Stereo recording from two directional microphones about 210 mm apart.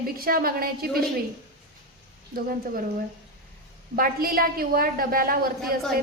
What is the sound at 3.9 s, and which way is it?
A woman's voice, 45° right (ahead or behind).